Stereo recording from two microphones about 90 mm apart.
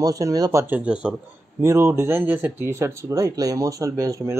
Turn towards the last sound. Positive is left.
turn(degrees=-40)  # may be behind; listen again after turning